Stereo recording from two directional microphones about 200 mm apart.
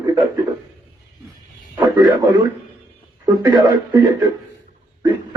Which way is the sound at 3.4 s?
20° right (ahead or behind).